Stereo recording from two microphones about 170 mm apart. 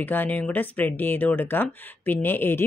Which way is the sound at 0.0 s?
10° left (ahead or behind).